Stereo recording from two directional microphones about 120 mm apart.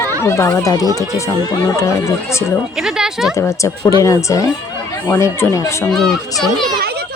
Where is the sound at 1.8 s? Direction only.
25° left (ahead or behind).